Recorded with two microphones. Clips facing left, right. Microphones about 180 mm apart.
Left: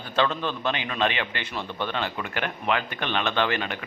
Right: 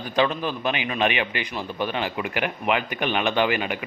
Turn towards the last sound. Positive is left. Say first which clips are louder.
# right 3 dB
turn(degrees=-10)  # may be behind; listen again after turning